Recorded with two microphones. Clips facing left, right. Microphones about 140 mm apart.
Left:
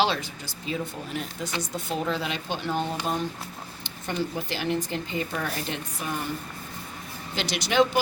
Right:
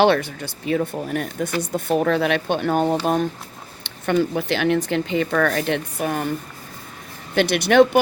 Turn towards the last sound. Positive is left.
turn(degrees=-60)  # may be behind; listen again after turning